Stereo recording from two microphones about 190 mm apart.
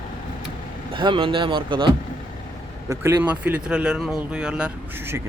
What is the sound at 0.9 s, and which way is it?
Speech, 25° right (ahead or behind).